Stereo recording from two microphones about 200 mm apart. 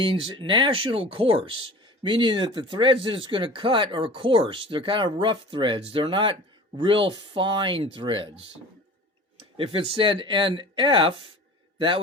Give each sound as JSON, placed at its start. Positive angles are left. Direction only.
{"t": 0.0, "sound": "speech", "side_deg": -25}